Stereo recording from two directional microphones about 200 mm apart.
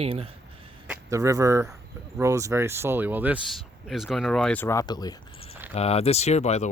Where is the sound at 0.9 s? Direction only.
15° right (ahead or behind); by 5.5 s 20° left (ahead or behind).